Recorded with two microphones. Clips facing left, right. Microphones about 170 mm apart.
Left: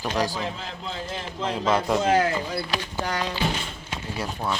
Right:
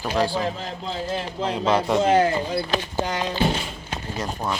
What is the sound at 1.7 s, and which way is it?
Speech, centre (ahead or behind).